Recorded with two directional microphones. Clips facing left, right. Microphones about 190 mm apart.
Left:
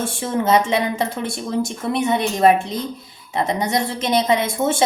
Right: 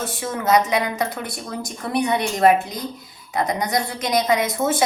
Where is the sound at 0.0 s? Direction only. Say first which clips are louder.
Left 4 dB; 30° left (ahead or behind).